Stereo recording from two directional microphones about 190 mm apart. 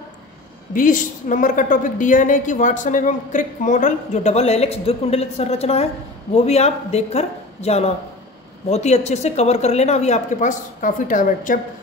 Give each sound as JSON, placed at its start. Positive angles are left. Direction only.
{"t": 0.7, "sound": "a woman's voice", "side_deg": 45}